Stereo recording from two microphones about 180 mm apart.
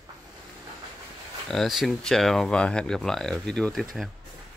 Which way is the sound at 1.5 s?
Centre (ahead or behind).